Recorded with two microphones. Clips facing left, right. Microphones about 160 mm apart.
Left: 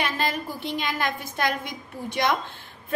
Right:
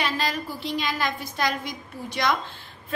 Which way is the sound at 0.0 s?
50° left (ahead or behind).